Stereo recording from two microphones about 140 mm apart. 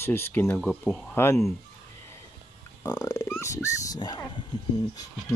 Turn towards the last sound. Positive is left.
turn(degrees=25)  # may be behind; listen again after turning